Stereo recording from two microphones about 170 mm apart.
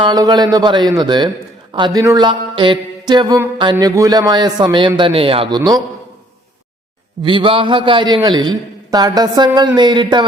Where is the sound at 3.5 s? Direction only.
25° right (ahead or behind).